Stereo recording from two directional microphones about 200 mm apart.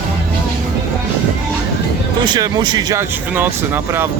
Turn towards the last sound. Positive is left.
turn(degrees=-10)  # may be behind; listen again after turning